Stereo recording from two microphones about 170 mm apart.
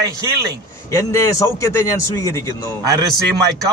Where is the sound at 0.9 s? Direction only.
15° left (ahead or behind).